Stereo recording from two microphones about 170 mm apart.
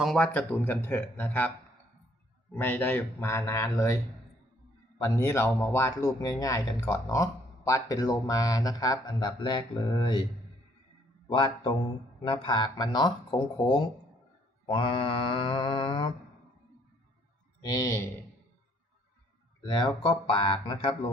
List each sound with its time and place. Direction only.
0.0 s speech: 5° left (ahead or behind)
2.6 s speech: 10° left (ahead or behind)
11.3 s speech: 30° left (ahead or behind)
17.6 s speech: 20° left (ahead or behind)
19.6 s speech: 25° left (ahead or behind)